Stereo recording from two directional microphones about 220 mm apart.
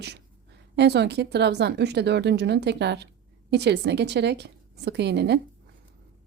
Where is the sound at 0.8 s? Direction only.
50° right (ahead or behind).